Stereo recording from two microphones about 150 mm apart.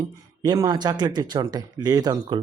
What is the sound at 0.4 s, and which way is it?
Speech, 25° right (ahead or behind).